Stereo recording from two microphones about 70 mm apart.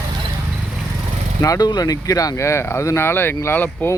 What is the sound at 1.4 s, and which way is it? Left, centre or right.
Speech, left.